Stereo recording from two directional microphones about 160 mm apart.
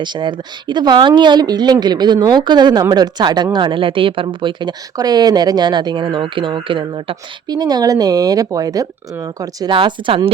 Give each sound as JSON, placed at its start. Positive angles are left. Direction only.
{"t": 0.0, "sound": "speech", "side_deg": -30}